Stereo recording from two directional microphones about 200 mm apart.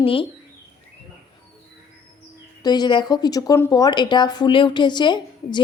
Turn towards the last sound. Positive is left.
turn(degrees=25)  # may be behind; listen again after turning